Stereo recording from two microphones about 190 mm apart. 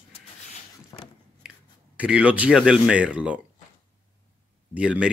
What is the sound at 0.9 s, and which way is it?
Biting, 20° left (ahead or behind).